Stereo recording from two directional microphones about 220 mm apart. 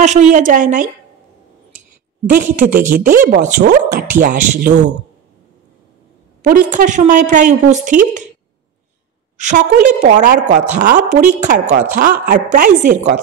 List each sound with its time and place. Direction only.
0.0 s a woman's voice: 35° right (ahead or behind)
2.2 s a woman's voice: 40° right (ahead or behind)
6.4 s a woman's voice: 40° right (ahead or behind)
9.4 s a woman's voice: 35° right (ahead or behind)